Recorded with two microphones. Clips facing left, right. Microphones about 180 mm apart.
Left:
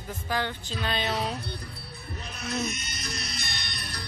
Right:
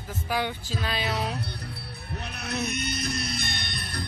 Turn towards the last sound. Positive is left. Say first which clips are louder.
# right 4 dB
turn(degrees=-55)  # may be behind; listen again after turning